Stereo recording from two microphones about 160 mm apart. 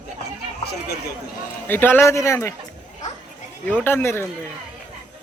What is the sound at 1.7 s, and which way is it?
Speech, 10° left (ahead or behind).